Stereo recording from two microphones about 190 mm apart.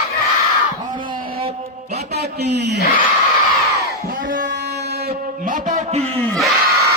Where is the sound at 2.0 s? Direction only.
60° right (ahead or behind).